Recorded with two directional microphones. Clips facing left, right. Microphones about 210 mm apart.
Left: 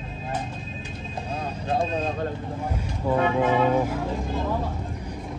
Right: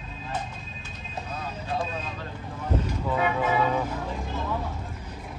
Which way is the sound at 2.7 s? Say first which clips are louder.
Right 1 dB; 10° left (ahead or behind).